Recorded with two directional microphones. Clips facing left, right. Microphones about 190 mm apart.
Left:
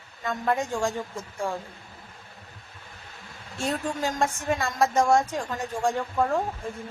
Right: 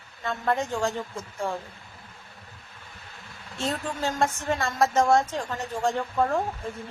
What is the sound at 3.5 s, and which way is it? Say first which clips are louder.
A woman's voice: left 1 dB; 15° left (ahead or behind).